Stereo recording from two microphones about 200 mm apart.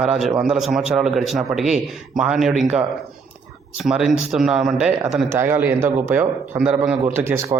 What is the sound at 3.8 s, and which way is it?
A man's voice, 5° right (ahead or behind).